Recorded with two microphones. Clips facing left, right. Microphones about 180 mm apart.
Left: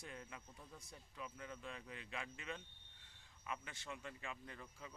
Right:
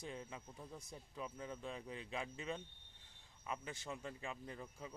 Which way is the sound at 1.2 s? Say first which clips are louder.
Right 4 dB; 30° right (ahead or behind).